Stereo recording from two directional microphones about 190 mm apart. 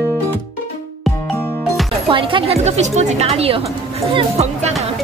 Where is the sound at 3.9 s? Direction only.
35° right (ahead or behind).